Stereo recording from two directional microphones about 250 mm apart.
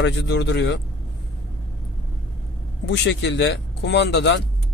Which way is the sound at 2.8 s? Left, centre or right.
Left.